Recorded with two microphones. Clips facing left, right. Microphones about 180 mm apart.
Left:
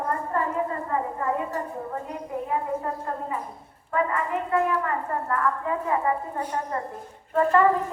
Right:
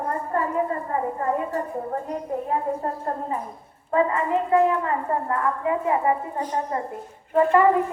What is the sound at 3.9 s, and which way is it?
A woman's voice, 25° right (ahead or behind).